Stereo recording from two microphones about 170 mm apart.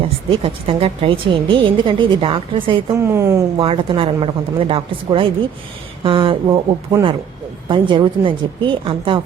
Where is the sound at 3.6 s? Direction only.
30° right (ahead or behind).